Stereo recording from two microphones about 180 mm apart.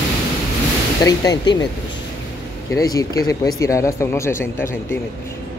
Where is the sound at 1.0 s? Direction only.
20° left (ahead or behind).